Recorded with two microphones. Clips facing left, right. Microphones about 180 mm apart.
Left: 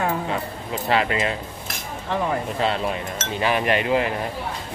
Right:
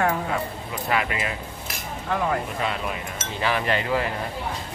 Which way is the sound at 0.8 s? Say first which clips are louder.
Left 4 dB; 30° left (ahead or behind).